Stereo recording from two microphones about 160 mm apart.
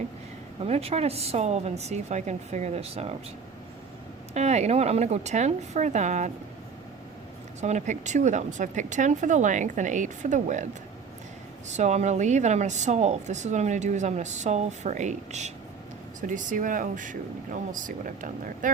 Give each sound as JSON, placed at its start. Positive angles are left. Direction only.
{"t": 0.6, "sound": "speech", "side_deg": -40}
{"t": 4.4, "sound": "speech", "side_deg": -45}
{"t": 7.6, "sound": "speech", "side_deg": -50}
{"t": 11.7, "sound": "speech", "side_deg": -45}